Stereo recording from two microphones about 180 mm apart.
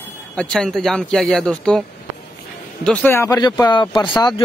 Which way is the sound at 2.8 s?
10° left (ahead or behind).